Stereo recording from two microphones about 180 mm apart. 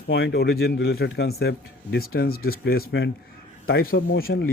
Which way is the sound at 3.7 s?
60° left (ahead or behind).